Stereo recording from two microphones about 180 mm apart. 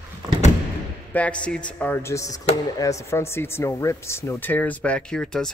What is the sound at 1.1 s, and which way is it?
A man's voice, 5° left (ahead or behind).